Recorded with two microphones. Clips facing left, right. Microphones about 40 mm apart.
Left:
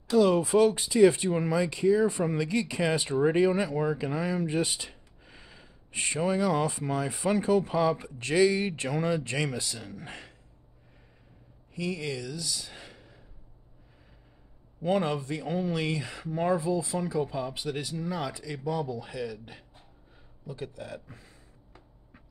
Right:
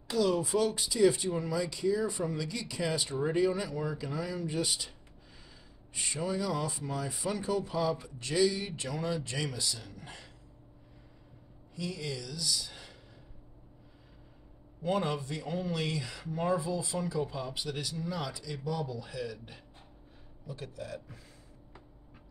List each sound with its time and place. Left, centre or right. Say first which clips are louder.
0.2 s speech: left 6 dB; left
11.7 s speech: left 5 dB; left
14.9 s speech: left 4 dB; left
16.8 s speech: left 4 dB; left
20.4 s speech: left 3 dB; left